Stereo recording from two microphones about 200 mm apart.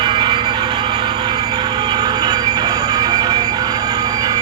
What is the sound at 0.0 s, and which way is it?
Train, 20° right (ahead or behind).